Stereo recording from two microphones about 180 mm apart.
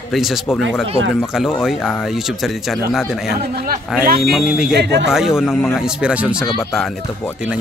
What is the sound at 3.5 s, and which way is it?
Speech, 55° right (ahead or behind).